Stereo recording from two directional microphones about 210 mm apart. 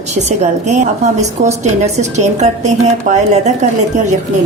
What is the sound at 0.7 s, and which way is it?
A woman's voice, 35° right (ahead or behind).